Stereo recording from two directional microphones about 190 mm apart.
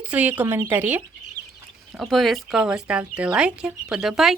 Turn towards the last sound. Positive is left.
turn(degrees=0)  # may be behind; listen again after turning